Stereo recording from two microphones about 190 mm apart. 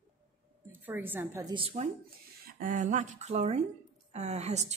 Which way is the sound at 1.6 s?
30° right (ahead or behind).